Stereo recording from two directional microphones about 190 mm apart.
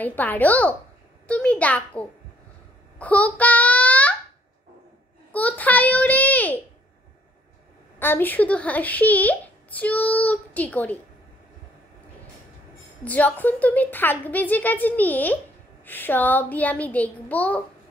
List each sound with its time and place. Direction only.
0.0 s a child's voice: 10° left (ahead or behind)
5.3 s a sound: 10° left (ahead or behind)
8.0 s speech: 10° left (ahead or behind)
13.0 s speech: 10° left (ahead or behind)